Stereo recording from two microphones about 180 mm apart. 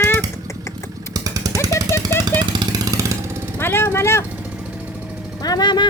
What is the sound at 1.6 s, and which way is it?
Jackhammer, 15° left (ahead or behind).